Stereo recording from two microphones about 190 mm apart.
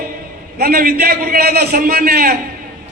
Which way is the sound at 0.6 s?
50° right (ahead or behind).